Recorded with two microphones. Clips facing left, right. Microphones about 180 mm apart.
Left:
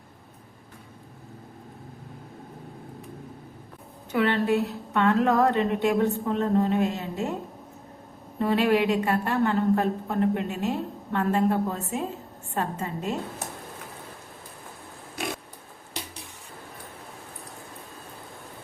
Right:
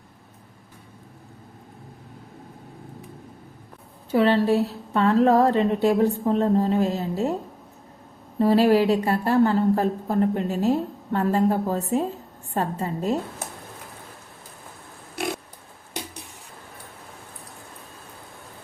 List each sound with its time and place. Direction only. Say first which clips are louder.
4.1 s a woman's voice: right 4 dB; 30° right (ahead or behind)
8.4 s a woman's voice: right 5 dB; 35° right (ahead or behind)